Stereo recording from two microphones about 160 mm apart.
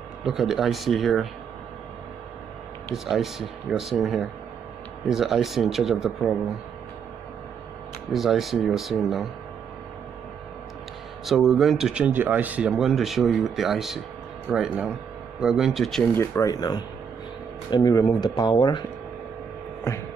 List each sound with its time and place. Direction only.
0.2 s speech: 5° right (ahead or behind)
3.1 s speech: centre (ahead or behind)
8.1 s speech: centre (ahead or behind)
11.2 s speech: centre (ahead or behind)
16.2 s speech: 20° left (ahead or behind)